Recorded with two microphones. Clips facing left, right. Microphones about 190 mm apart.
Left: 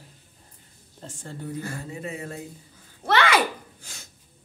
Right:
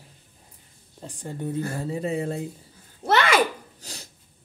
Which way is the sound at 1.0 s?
15° right (ahead or behind).